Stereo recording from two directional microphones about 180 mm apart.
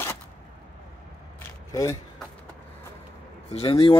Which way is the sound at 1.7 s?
15° left (ahead or behind).